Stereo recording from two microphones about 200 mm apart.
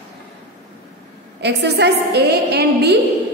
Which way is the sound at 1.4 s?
60° right (ahead or behind).